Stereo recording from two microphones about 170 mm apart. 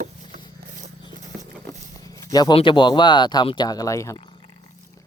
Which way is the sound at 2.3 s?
20° left (ahead or behind).